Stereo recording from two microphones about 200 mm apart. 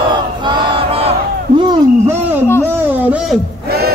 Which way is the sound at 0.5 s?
30° right (ahead or behind).